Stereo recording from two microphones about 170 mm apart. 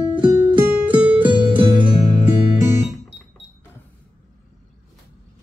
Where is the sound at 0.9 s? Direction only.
5° right (ahead or behind).